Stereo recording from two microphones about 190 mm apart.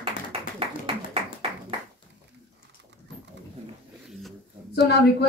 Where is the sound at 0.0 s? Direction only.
30° right (ahead or behind).